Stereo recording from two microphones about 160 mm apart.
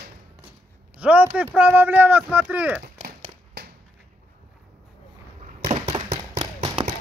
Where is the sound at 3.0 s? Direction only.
85° right.